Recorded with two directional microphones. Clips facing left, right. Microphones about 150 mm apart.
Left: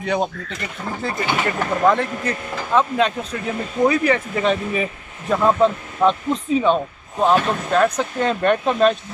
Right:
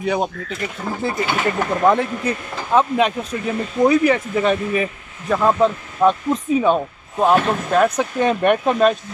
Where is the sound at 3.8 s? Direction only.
10° right (ahead or behind).